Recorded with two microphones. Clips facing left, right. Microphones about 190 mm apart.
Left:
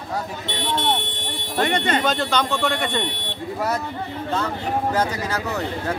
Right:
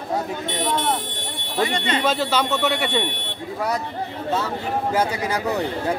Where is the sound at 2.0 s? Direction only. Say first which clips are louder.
Right 1 dB; 5° right (ahead or behind).